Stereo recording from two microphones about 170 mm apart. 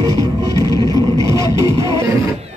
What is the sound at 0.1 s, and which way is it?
Music, 20° left (ahead or behind).